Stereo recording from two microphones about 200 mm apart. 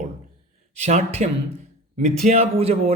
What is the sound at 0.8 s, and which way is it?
A man's voice, 35° right (ahead or behind).